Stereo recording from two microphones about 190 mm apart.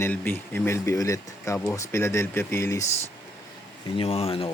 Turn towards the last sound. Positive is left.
turn(degrees=30)  # may be behind; listen again after turning